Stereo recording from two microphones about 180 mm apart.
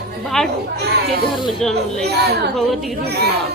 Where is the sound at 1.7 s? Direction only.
65° right (ahead or behind).